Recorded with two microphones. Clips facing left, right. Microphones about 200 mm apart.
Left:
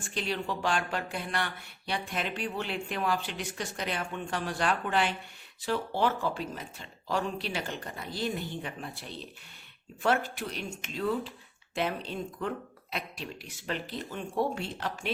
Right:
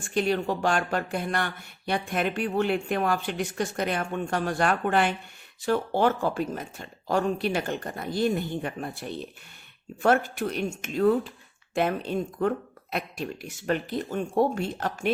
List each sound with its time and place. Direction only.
0.1 s speech: 50° right (ahead or behind)